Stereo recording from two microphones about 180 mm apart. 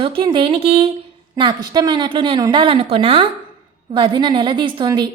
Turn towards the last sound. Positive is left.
turn(degrees=-25)  # may be behind; listen again after turning